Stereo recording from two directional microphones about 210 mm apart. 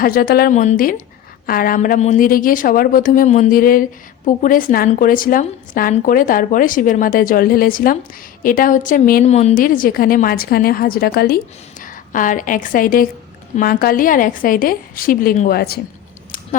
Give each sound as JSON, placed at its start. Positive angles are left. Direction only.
{"t": 0.0, "sound": "a woman's voice", "side_deg": 45}